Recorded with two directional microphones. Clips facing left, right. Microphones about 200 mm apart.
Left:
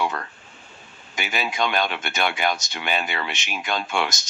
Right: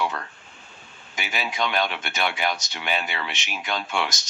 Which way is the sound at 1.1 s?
50° left (ahead or behind).